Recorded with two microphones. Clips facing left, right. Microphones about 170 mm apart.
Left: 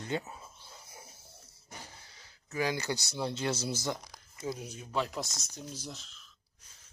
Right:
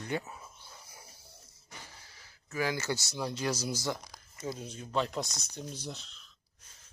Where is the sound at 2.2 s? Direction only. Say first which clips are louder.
Even; 20° left (ahead or behind).